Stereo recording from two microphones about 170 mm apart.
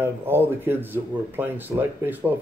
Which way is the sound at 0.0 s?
15° right (ahead or behind).